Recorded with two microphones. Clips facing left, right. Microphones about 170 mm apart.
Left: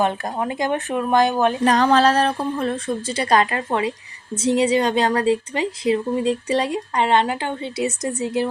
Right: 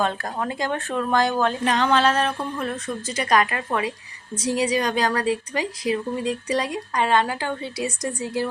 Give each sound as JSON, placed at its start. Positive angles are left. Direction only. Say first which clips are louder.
{"t": 0.0, "sound": "a woman's voice", "louder": "left 3 dB", "side_deg": 20}
{"t": 1.6, "sound": "a woman's voice", "louder": "left 5 dB", "side_deg": 40}